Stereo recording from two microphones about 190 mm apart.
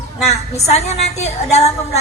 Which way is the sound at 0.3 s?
35° left (ahead or behind).